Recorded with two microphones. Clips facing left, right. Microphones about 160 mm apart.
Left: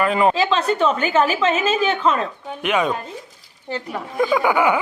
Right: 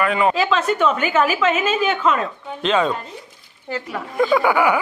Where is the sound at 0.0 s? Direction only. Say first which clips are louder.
Left 1 dB; 35° left (ahead or behind).